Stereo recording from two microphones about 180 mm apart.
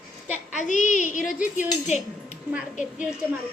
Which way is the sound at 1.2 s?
Centre (ahead or behind).